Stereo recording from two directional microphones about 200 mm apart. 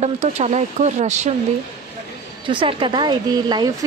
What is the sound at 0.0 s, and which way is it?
Speech, 35° right (ahead or behind).